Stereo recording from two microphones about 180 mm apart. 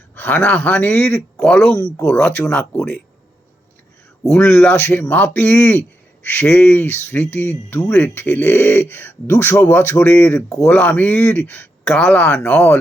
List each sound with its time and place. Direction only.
0.2 s speech: 10° left (ahead or behind)
4.2 s speech: 5° left (ahead or behind)